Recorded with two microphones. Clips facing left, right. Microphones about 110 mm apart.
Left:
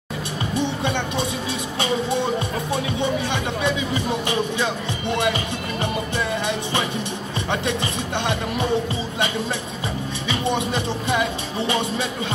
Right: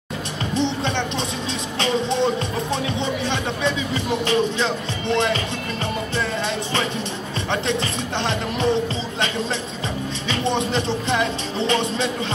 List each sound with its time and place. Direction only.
0.6 s music: 10° left (ahead or behind)
2.7 s speech: 15° left (ahead or behind)
6.1 s music: 15° left (ahead or behind)
7.6 s speech: 15° left (ahead or behind)
10.3 s speech: 15° left (ahead or behind)